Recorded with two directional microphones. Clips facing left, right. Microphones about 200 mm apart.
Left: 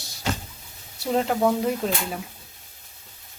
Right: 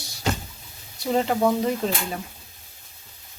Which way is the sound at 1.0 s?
Centre (ahead or behind).